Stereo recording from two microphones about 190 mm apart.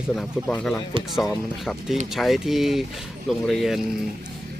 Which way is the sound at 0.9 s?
25° right (ahead or behind).